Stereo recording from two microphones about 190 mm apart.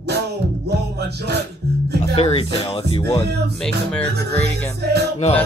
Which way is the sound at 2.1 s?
30° left (ahead or behind).